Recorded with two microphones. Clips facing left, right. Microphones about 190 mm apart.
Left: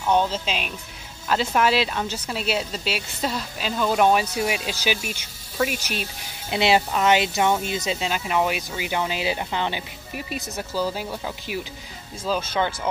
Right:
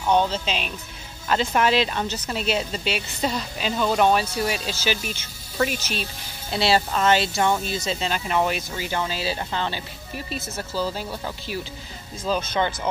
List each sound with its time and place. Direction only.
0.1 s speech: 10° left (ahead or behind)